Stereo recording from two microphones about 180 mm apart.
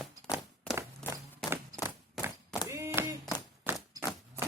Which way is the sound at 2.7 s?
15° right (ahead or behind).